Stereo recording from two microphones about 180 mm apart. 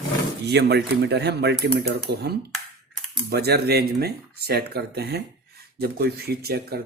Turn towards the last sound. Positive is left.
turn(degrees=-60)  # may be behind; listen again after turning